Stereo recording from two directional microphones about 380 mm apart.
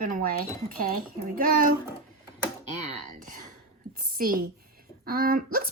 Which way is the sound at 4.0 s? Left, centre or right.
Right.